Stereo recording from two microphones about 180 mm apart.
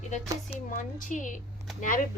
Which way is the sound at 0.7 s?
45° left (ahead or behind).